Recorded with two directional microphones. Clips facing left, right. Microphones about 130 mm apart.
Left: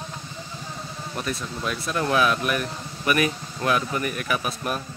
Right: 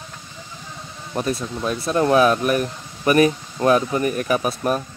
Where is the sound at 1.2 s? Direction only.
35° right (ahead or behind).